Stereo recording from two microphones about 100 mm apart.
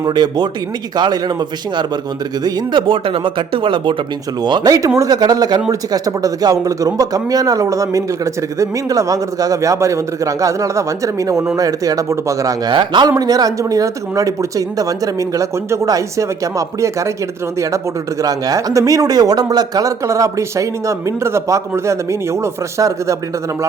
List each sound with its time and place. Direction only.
0.0 s a man's voice: 45° right (ahead or behind)
2.8 s speech: 60° right (ahead or behind)
4.4 s speech: 45° right (ahead or behind)
12.7 s speech: 50° right (ahead or behind); by 17.1 s 30° right (ahead or behind)
18.2 s speech: 40° right (ahead or behind)